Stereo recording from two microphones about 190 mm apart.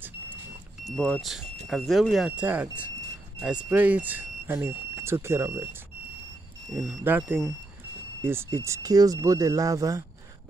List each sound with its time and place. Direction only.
0.8 s speech: 5° left (ahead or behind); by 10.0 s 15° right (ahead or behind)